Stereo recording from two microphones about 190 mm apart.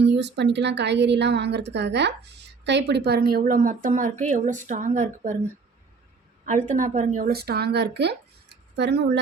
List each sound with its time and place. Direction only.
0.0 s a woman's voice: 65° right (ahead or behind); by 5.4 s 40° right (ahead or behind)
6.7 s a woman's voice: 40° right (ahead or behind); by 9.1 s 60° right (ahead or behind)